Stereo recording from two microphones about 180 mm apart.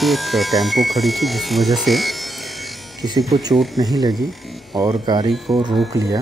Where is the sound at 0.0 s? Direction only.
Centre (ahead or behind).